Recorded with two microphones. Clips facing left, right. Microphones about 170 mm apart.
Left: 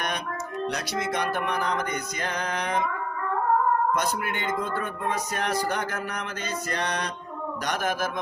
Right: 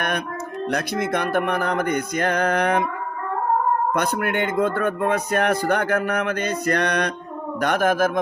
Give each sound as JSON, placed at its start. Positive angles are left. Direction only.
{"t": 0.7, "sound": "speech", "side_deg": -55}
{"t": 3.9, "sound": "speech", "side_deg": -55}